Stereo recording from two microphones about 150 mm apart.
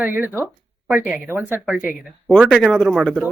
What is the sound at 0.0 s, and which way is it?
Speech, 10° right (ahead or behind).